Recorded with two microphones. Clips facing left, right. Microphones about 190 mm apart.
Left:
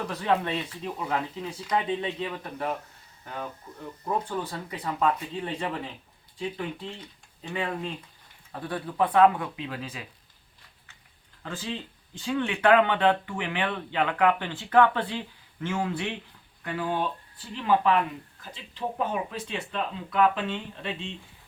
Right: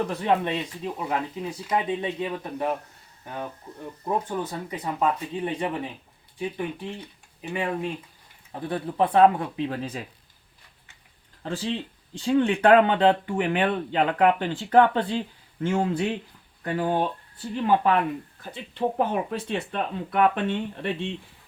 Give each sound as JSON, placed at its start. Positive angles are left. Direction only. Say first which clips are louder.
{"t": 0.1, "sound": "speech", "louder": "right 2 dB", "side_deg": -25}
{"t": 8.5, "sound": "speech", "louder": "right 3 dB", "side_deg": -25}
{"t": 11.4, "sound": "speech", "louder": "right 6 dB", "side_deg": -35}
{"t": 18.9, "sound": "speech", "louder": "right 4 dB", "side_deg": -60}